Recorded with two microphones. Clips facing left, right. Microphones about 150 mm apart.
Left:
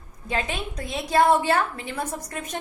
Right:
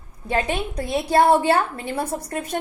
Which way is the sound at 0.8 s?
30° right (ahead or behind).